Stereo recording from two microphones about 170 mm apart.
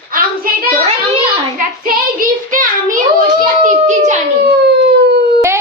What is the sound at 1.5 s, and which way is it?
Child singing, 55° right (ahead or behind).